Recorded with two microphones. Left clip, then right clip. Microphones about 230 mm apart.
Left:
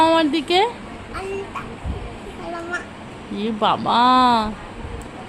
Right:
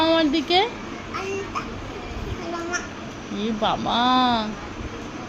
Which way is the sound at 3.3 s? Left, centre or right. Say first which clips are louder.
Left 4 dB; centre.